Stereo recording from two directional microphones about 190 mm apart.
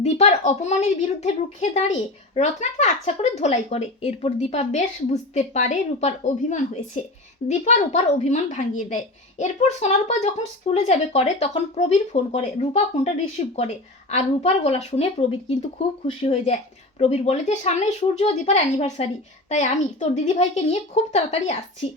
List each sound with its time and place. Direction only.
0.0 s a woman's voice: 35° left (ahead or behind)